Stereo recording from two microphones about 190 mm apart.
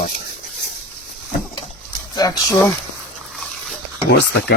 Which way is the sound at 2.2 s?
20° left (ahead or behind).